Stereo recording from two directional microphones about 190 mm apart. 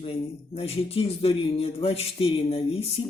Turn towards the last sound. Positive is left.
turn(degrees=30)  # may be behind; listen again after turning